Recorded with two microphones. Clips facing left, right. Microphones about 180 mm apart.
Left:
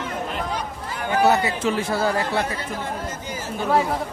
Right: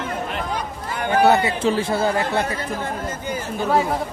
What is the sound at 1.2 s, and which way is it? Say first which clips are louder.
Speech: right 2 dB; 25° right (ahead or behind).